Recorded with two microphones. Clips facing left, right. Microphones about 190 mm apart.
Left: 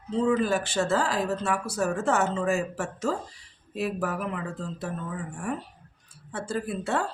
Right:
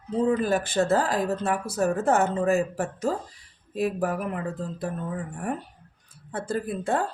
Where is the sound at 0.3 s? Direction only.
40° right (ahead or behind).